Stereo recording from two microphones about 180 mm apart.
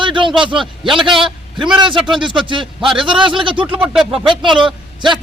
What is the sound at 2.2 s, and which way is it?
Speech, 25° right (ahead or behind).